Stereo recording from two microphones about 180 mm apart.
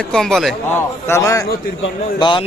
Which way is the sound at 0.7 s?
15° left (ahead or behind).